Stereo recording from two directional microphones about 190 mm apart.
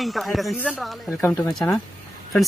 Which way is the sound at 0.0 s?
Centre (ahead or behind).